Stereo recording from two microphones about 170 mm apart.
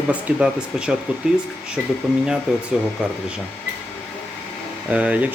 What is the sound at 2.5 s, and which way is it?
Speech, 5° right (ahead or behind).